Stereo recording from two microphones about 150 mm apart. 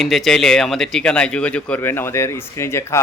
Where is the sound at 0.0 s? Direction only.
Centre (ahead or behind).